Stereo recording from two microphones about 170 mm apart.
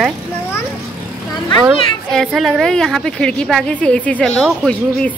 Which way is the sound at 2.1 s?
Centre (ahead or behind).